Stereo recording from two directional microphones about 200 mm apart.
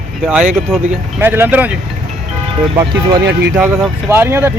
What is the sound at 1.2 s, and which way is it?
Speech, 10° right (ahead or behind).